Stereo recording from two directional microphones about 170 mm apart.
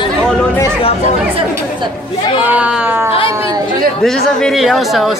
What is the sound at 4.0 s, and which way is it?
Speech, 5° left (ahead or behind).